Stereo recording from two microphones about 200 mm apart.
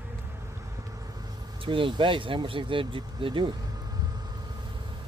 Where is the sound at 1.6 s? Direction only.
25° right (ahead or behind).